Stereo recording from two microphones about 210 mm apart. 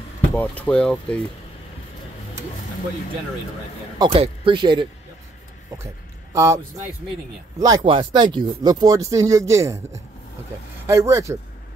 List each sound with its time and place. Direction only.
0.3 s speech: 5° left (ahead or behind)
4.0 s speech: 25° right (ahead or behind)
6.3 s speech: 15° right (ahead or behind)